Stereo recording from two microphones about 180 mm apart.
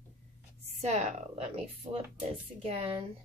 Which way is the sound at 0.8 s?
35° right (ahead or behind).